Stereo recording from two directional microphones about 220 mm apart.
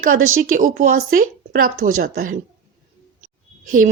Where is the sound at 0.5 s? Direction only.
35° right (ahead or behind).